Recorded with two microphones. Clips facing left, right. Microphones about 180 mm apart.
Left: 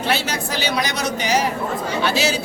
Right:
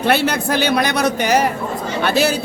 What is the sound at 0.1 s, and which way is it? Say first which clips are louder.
Speech: right 7 dB; 55° right (ahead or behind).